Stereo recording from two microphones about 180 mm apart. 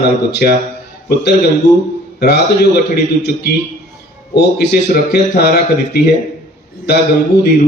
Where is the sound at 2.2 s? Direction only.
65° left (ahead or behind).